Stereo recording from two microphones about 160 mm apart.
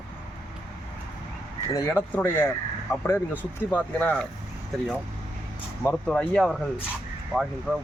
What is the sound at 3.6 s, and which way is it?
Speech, 10° left (ahead or behind).